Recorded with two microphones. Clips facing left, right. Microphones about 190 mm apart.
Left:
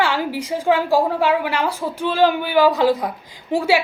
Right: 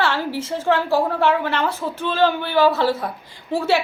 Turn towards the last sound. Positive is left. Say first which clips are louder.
# left 2 dB
turn(degrees=10)  # may be behind; listen again after turning